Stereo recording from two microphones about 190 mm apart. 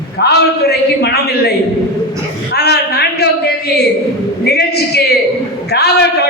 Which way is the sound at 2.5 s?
60° left (ahead or behind).